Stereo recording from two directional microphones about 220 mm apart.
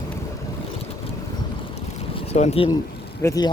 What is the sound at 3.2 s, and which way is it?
Speech, 15° left (ahead or behind).